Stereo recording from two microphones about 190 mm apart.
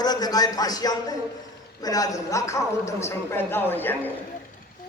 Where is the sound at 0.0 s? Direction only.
20° left (ahead or behind).